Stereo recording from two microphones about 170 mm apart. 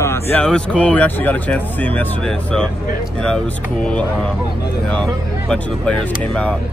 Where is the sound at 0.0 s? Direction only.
15° left (ahead or behind).